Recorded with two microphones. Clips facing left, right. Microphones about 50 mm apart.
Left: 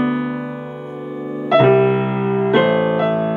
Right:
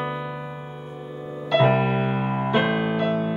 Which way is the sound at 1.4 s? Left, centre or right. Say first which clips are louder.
Left 7 dB; left.